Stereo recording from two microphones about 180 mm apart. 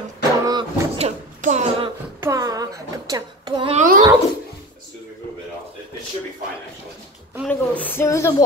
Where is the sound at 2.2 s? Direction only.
20° right (ahead or behind).